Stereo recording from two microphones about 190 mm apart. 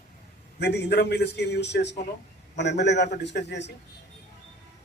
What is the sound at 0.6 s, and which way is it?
A man's voice, 60° left (ahead or behind).